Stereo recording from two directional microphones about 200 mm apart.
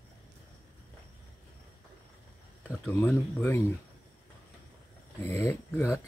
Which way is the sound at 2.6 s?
10° left (ahead or behind).